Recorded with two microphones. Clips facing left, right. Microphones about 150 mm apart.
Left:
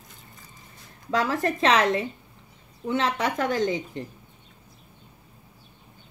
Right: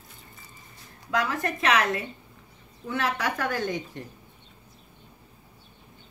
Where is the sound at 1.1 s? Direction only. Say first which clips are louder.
Left 3 dB; 30° left (ahead or behind).